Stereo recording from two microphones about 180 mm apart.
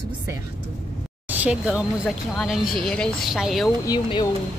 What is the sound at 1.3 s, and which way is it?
Speech, 5° right (ahead or behind).